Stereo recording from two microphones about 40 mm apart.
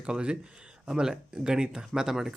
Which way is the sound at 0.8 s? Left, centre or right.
Centre.